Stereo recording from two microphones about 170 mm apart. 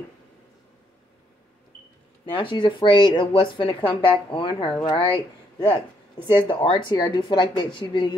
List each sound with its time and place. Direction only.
2.3 s speech: 30° left (ahead or behind)